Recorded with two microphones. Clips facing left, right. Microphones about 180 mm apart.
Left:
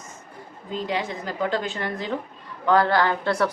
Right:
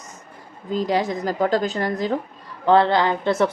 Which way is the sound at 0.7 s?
40° right (ahead or behind).